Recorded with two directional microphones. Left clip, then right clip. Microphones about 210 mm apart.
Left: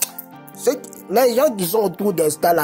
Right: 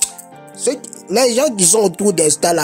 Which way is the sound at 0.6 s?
15° right (ahead or behind).